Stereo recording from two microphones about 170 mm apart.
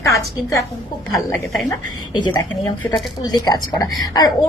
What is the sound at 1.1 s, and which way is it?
Speech, centre (ahead or behind).